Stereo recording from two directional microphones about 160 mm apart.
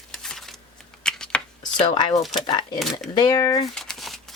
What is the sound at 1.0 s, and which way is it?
Shuffling cards, 5° left (ahead or behind).